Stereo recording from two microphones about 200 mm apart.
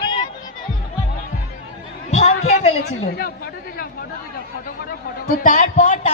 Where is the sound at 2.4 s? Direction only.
50° left (ahead or behind).